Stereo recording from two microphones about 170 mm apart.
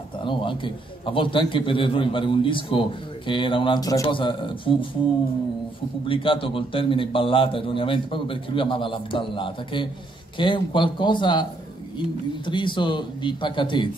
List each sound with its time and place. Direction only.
0.2 s a man's voice: 30° left (ahead or behind)
6.0 s a man's voice: 30° left (ahead or behind)
12.4 s a man's voice: 30° left (ahead or behind)